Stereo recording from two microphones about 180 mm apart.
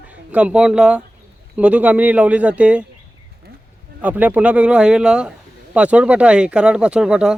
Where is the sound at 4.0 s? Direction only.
10° right (ahead or behind).